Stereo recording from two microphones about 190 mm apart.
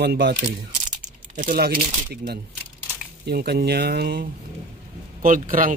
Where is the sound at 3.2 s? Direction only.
55° right (ahead or behind).